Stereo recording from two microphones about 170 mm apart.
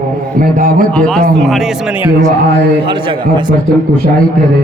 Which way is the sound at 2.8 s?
30° right (ahead or behind).